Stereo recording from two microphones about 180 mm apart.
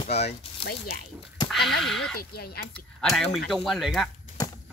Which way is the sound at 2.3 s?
60° left (ahead or behind).